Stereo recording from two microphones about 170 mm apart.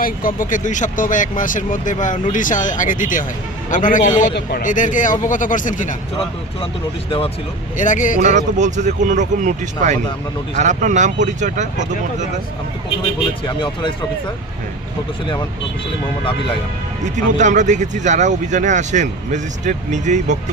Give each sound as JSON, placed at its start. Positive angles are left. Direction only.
{"t": 0.0, "sound": "speech", "side_deg": 55}
{"t": 7.8, "sound": "speech", "side_deg": 50}
{"t": 8.2, "sound": "speech", "side_deg": -45}
{"t": 17.3, "sound": "speech", "side_deg": -45}